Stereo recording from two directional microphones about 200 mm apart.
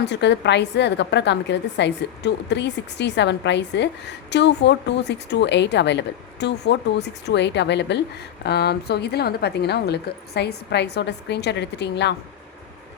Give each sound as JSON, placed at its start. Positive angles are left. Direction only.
{"t": 0.0, "sound": "a woman's voice", "side_deg": 60}